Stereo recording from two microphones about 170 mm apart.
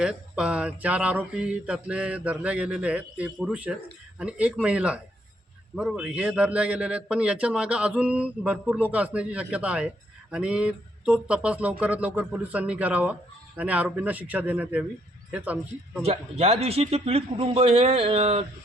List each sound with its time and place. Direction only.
0.0 s a man's voice: 5° right (ahead or behind)
16.0 s a man's voice: 35° right (ahead or behind)